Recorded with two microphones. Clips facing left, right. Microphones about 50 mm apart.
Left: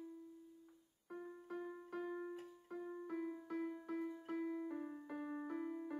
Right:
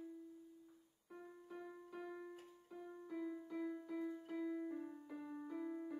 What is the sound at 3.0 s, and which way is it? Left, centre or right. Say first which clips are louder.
Music: right 1 dB; left.